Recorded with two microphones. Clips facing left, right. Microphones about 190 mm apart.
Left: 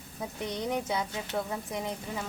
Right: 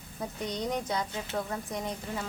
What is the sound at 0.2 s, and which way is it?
Speech, 5° left (ahead or behind).